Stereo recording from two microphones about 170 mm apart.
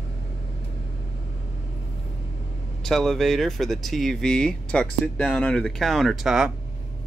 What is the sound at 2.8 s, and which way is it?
Speech, centre (ahead or behind).